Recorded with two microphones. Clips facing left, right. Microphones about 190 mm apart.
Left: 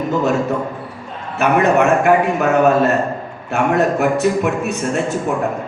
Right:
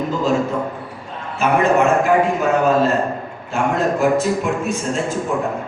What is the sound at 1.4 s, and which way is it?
A man's voice, 65° left (ahead or behind).